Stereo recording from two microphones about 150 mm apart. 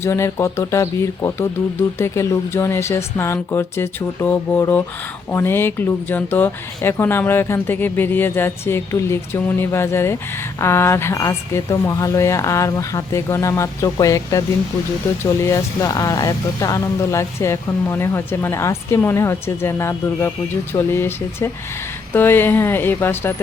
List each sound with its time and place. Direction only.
0.0 s speech: 20° left (ahead or behind)